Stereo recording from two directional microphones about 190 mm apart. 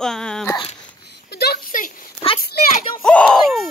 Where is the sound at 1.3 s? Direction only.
55° left (ahead or behind).